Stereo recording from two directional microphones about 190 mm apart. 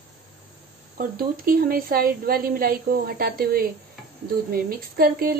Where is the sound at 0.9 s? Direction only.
50° right (ahead or behind).